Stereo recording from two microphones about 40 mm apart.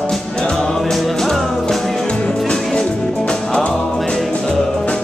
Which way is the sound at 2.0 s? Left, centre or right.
Left.